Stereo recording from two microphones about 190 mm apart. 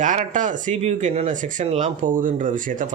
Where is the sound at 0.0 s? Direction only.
40° right (ahead or behind).